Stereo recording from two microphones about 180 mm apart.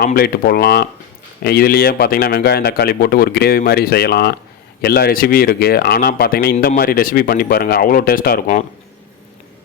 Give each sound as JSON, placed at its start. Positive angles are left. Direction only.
{"t": 0.0, "sound": "speech", "side_deg": 55}